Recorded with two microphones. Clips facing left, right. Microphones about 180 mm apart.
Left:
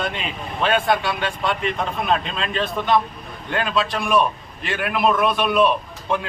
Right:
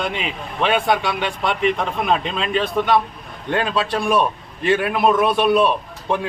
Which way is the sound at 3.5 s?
25° right (ahead or behind).